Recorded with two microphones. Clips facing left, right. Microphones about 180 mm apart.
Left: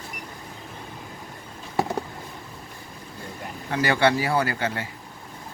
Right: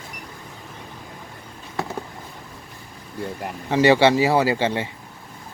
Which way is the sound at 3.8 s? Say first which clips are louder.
Right 6 dB; 25° right (ahead or behind).